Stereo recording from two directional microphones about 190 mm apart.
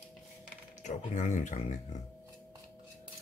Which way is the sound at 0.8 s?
40° left (ahead or behind).